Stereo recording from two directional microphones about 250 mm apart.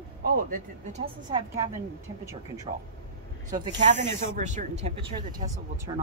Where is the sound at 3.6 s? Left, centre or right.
Right.